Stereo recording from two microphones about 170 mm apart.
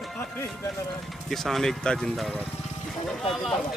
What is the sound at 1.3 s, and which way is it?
Speech, centre (ahead or behind).